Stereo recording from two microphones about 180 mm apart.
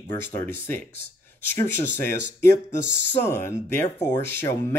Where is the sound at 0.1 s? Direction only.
10° left (ahead or behind).